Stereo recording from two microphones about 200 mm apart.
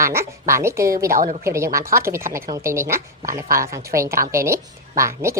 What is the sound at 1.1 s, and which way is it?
Speech, 45° right (ahead or behind).